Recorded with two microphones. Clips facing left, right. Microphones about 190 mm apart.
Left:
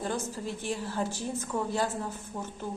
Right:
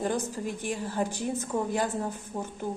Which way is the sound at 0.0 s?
15° right (ahead or behind).